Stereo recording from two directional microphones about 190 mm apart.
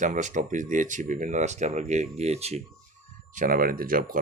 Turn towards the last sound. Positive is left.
turn(degrees=-50)  # may be behind; listen again after turning